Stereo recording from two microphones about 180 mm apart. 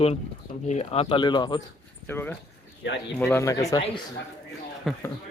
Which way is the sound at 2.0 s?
10° left (ahead or behind).